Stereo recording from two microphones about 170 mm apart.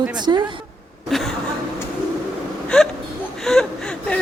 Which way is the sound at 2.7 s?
5° left (ahead or behind).